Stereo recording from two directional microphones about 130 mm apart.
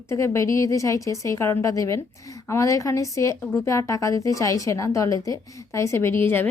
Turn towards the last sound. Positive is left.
turn(degrees=15)  # may be behind; listen again after turning